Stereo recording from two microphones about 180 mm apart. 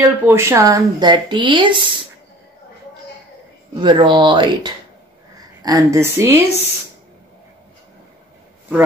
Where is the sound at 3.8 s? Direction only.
25° right (ahead or behind).